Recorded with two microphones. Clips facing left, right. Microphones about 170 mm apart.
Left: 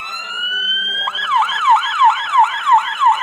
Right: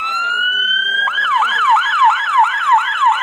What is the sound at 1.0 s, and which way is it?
Emergency vehicle, 25° left (ahead or behind).